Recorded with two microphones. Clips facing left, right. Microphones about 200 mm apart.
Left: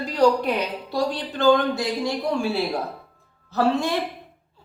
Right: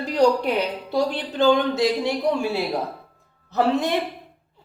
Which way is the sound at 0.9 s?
20° right (ahead or behind).